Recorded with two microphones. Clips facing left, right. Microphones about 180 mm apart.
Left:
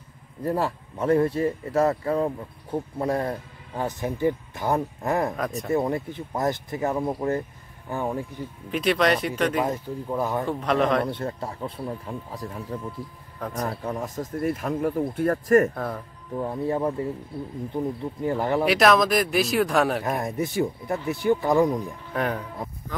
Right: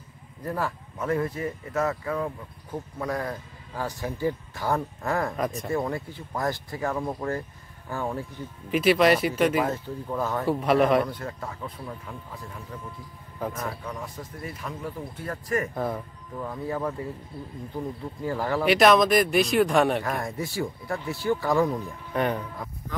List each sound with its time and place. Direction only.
0.4 s speech: 30° left (ahead or behind)
5.3 s speech: centre (ahead or behind)
5.7 s a man's voice: 20° left (ahead or behind)
8.7 s speech: 5° right (ahead or behind)
9.7 s a man's voice: 15° left (ahead or behind)
10.4 s speech: 5° right (ahead or behind)
11.1 s speech: 30° left (ahead or behind)
13.7 s speech: 50° left (ahead or behind)
15.7 s speech: 5° right (ahead or behind)
16.3 s speech: 30° left (ahead or behind)
18.6 s speech: centre (ahead or behind)
20.1 s speech: 20° left (ahead or behind)
22.1 s speech: centre (ahead or behind)
22.6 s music: 25° left (ahead or behind)